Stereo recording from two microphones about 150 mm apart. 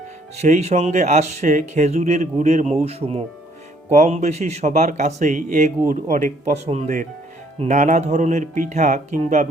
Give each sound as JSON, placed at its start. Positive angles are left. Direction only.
{"t": 0.3, "sound": "speech", "side_deg": -50}